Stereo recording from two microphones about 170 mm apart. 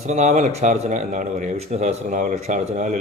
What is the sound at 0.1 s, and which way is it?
Speech, 45° right (ahead or behind).